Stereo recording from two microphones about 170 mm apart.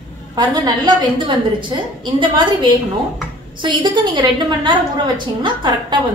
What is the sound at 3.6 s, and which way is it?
A woman's voice, 25° right (ahead or behind).